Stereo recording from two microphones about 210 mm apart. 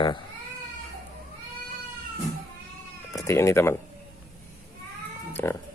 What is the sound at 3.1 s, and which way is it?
Speech, 15° left (ahead or behind).